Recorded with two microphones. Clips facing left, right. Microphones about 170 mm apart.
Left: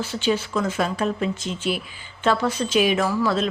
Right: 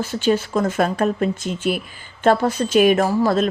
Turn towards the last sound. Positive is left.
turn(degrees=-45)  # may be behind; listen again after turning